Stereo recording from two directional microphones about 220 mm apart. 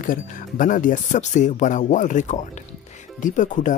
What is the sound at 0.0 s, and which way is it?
Speech, 40° left (ahead or behind).